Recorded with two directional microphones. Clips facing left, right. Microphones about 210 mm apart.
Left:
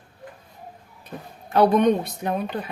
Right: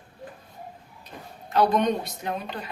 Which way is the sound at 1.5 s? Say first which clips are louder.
Left 5 dB; 55° left (ahead or behind).